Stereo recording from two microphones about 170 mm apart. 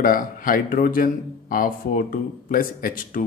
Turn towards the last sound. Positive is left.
turn(degrees=55)  # may be behind; listen again after turning